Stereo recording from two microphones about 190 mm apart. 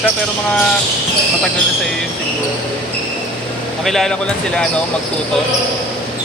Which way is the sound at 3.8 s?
Centre (ahead or behind).